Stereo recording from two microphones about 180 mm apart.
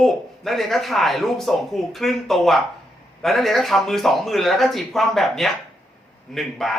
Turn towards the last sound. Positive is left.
turn(degrees=0)  # may be behind; listen again after turning